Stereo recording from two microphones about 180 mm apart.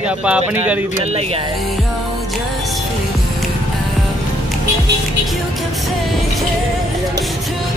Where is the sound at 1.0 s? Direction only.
35° right (ahead or behind).